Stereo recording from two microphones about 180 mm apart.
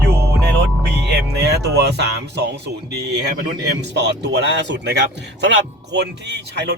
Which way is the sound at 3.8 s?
70° right (ahead or behind).